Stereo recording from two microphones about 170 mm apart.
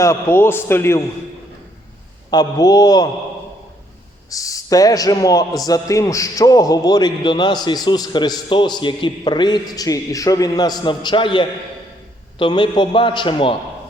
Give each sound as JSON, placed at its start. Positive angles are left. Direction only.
{"t": 0.0, "sound": "a man's voice", "side_deg": 15}
{"t": 2.3, "sound": "a man's voice", "side_deg": 20}
{"t": 4.3, "sound": "a man's voice", "side_deg": 20}